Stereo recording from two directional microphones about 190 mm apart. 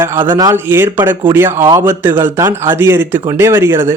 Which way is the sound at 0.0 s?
10° right (ahead or behind).